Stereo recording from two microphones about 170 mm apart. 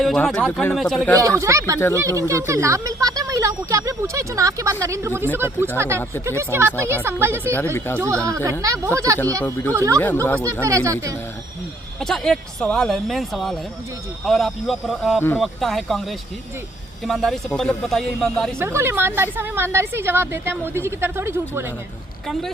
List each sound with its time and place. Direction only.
0.0 s speech: centre (ahead or behind)
1.4 s speech: 20° right (ahead or behind)
9.4 s speech: 10° left (ahead or behind)
9.7 s speech: 15° right (ahead or behind)
10.2 s speech: 10° left (ahead or behind)
10.6 s speech: 20° right (ahead or behind)
11.9 s speech: 5° left (ahead or behind)
17.1 s speech: centre (ahead or behind)
18.6 s speech: 15° right (ahead or behind)
22.3 s speech: centre (ahead or behind)